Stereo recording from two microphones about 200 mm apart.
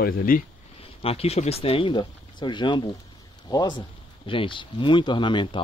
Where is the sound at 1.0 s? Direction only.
30° left (ahead or behind).